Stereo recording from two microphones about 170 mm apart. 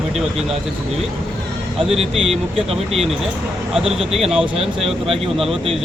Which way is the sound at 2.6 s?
35° right (ahead or behind).